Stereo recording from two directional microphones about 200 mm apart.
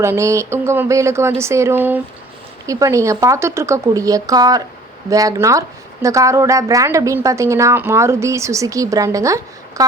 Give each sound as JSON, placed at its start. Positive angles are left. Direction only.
{"t": 0.0, "sound": "a woman's voice", "side_deg": -15}